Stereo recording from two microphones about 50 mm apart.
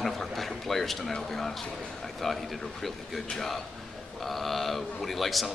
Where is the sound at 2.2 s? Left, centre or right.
Centre.